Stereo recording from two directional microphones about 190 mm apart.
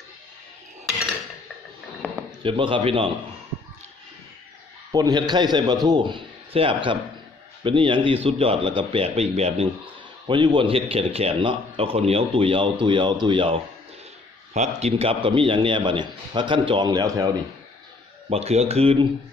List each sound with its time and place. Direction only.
2.4 s a man's voice: 25° right (ahead or behind)
4.9 s a man's voice: 20° right (ahead or behind)
14.8 s a man's voice: 30° right (ahead or behind)
18.3 s speech: 35° right (ahead or behind)